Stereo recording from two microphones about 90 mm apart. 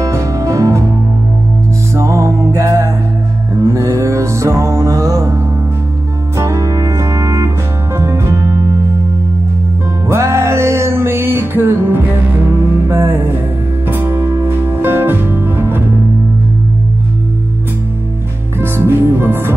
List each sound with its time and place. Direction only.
0.0 s music: 35° right (ahead or behind)
2.0 s music: 35° right (ahead or behind)
10.0 s music: 30° right (ahead or behind)
18.6 s music: 25° right (ahead or behind)